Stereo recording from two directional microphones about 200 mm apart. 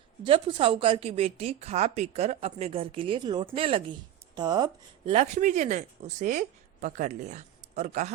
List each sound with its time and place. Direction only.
0.3 s a woman's voice: 25° right (ahead or behind)
5.1 s speech: 35° right (ahead or behind)